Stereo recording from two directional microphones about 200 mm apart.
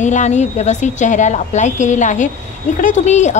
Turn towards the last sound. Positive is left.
turn(degrees=35)  # may be behind; listen again after turning